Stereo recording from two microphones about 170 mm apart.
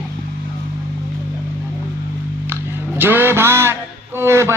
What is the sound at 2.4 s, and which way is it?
Music, 10° right (ahead or behind).